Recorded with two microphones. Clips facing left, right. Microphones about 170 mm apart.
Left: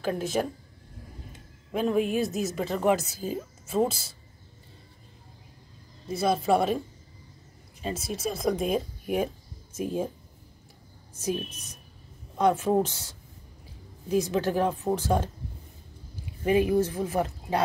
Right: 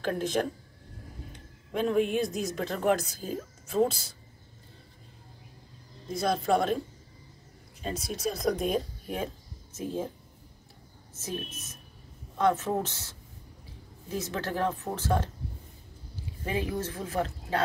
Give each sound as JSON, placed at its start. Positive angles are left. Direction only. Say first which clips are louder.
{"t": 0.0, "sound": "speech", "louder": "left 1 dB", "side_deg": 5}
{"t": 6.0, "sound": "speech", "louder": "left 3 dB", "side_deg": 5}
{"t": 7.8, "sound": "speech", "louder": "left 1 dB", "side_deg": 5}
{"t": 11.1, "sound": "speech", "louder": "left 6 dB", "side_deg": 15}
{"t": 14.1, "sound": "speech", "louder": "left 7 dB", "side_deg": 15}
{"t": 16.4, "sound": "speech", "louder": "left 9 dB", "side_deg": 15}